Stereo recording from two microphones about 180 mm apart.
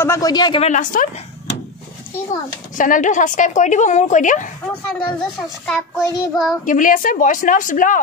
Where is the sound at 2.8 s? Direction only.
45° left (ahead or behind).